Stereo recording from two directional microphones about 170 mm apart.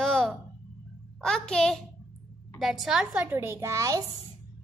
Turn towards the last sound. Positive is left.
turn(degrees=-20)  # may be behind; listen again after turning